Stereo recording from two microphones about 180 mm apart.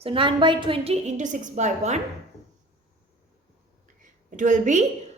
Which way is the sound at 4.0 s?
45° right (ahead or behind).